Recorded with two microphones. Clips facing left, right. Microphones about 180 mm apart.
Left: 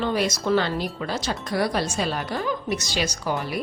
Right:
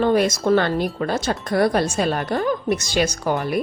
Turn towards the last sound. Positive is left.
turn(degrees=-55)  # may be behind; listen again after turning